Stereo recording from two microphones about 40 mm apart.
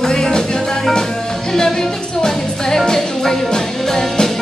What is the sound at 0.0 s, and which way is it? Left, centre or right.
Music, centre.